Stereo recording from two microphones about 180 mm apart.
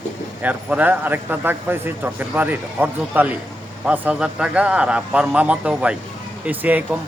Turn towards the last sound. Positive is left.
turn(degrees=-10)  # may be behind; listen again after turning